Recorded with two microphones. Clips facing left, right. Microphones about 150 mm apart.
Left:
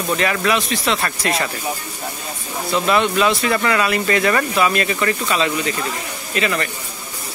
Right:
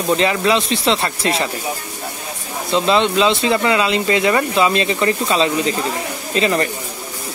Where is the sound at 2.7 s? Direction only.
25° right (ahead or behind).